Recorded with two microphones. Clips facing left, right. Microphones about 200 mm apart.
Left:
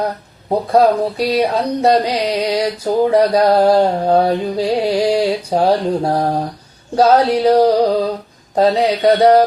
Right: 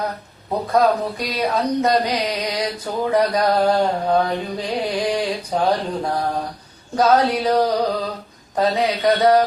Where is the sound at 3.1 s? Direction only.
30° left (ahead or behind).